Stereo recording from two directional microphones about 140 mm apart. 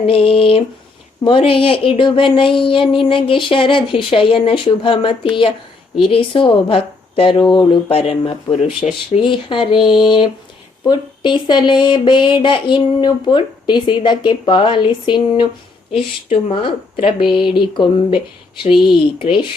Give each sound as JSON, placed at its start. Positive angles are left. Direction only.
{"t": 0.0, "sound": "speech", "side_deg": 40}
{"t": 19.2, "sound": "speech", "side_deg": 40}